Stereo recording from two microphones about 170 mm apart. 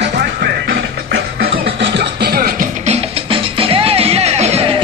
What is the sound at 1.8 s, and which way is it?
Music, 75° right (ahead or behind).